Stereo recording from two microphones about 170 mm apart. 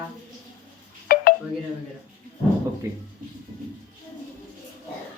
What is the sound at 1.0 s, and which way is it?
Telephone dialing, 60° left (ahead or behind).